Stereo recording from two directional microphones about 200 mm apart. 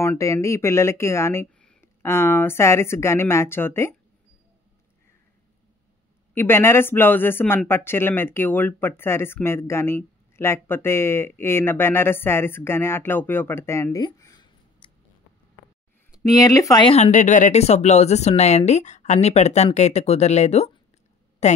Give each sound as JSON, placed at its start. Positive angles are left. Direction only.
{"t": 0.0, "sound": "speech", "side_deg": 15}
{"t": 6.3, "sound": "speech", "side_deg": 10}
{"t": 16.3, "sound": "speech", "side_deg": 15}
{"t": 16.9, "sound": "speech", "side_deg": 35}